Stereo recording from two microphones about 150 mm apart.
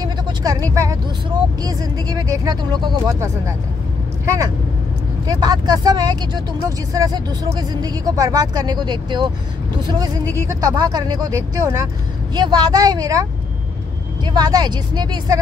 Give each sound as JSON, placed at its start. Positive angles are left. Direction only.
{"t": 0.0, "sound": "vehicle", "side_deg": -25}
{"t": 1.6, "sound": "speech", "side_deg": -25}
{"t": 5.2, "sound": "speech", "side_deg": -25}